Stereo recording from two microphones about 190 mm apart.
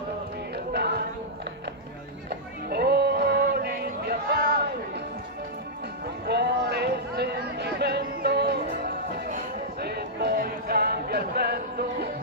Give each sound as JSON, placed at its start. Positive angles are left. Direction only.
{"t": 0.7, "sound": "music", "side_deg": -60}
{"t": 2.2, "sound": "music", "side_deg": -60}
{"t": 6.2, "sound": "a sound", "side_deg": -60}